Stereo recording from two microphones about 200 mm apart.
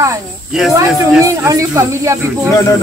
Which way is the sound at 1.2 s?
15° right (ahead or behind).